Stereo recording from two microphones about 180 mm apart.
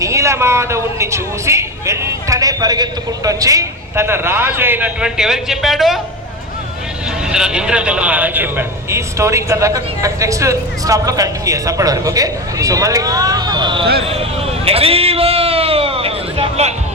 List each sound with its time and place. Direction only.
0.0 s a man's voice: 15° right (ahead or behind); by 6.0 s centre (ahead or behind)
7.3 s a man's voice: 5° right (ahead or behind); by 13.8 s 25° right (ahead or behind)
14.0 s a sound: 30° right (ahead or behind)